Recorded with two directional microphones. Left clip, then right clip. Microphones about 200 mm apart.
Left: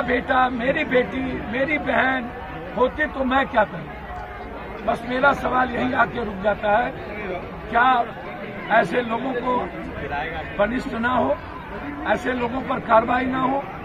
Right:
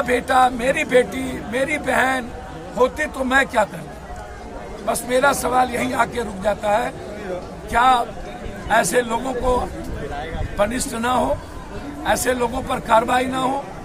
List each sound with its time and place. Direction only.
0.0 s speech: 20° right (ahead or behind)
4.8 s speech: 20° right (ahead or behind)
7.7 s speech: 25° right (ahead or behind)
10.6 s speech: 20° right (ahead or behind)